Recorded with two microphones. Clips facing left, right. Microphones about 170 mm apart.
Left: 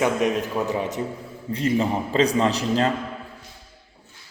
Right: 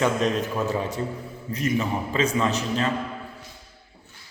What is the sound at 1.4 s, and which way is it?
A man's voice, 30° left (ahead or behind).